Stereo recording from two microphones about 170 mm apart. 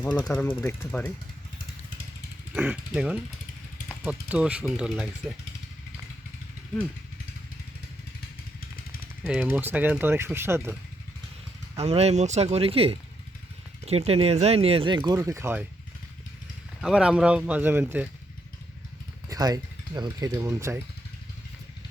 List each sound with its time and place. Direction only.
0.0 s speech: 10° left (ahead or behind)
2.6 s speech: 10° right (ahead or behind)
9.2 s speech: 5° right (ahead or behind)
11.8 s speech: 35° right (ahead or behind); by 15.6 s 15° right (ahead or behind)
16.8 s speech: 5° right (ahead or behind)
19.3 s speech: 20° right (ahead or behind)